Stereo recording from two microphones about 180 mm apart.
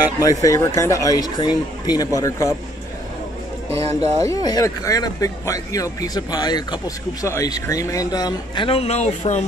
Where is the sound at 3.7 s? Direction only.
35° right (ahead or behind).